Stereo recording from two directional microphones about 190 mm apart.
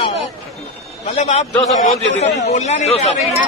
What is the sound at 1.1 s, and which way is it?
A man's voice, 35° left (ahead or behind).